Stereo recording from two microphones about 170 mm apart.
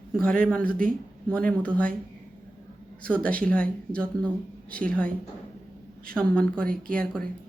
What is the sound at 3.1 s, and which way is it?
Speech, 5° left (ahead or behind).